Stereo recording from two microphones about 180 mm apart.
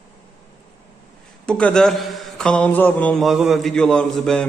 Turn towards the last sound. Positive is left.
turn(degrees=5)  # may be behind; listen again after turning